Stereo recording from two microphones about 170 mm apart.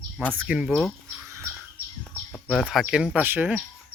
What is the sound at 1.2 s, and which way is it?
Bird, 20° right (ahead or behind).